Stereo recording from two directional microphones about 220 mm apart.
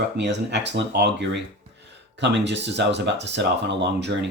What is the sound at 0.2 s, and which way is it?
Speech, 50° right (ahead or behind).